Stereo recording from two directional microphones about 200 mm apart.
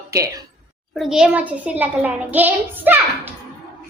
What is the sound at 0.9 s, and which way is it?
Child singing, centre (ahead or behind).